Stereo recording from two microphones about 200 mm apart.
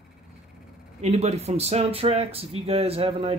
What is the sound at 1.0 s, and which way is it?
Speech, 30° right (ahead or behind).